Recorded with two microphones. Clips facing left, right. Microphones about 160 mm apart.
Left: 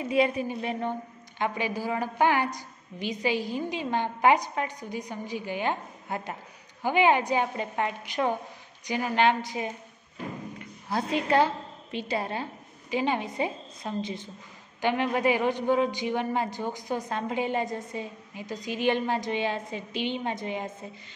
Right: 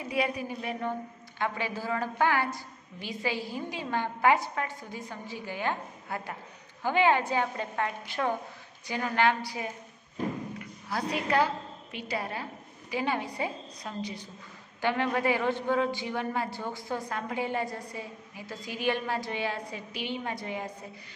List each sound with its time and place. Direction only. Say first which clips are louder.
0.1 s a man's voice: left 5 dB; 25° left (ahead or behind)